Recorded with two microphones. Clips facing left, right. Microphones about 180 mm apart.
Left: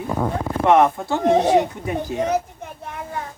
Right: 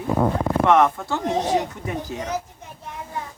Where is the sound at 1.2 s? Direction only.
60° left (ahead or behind).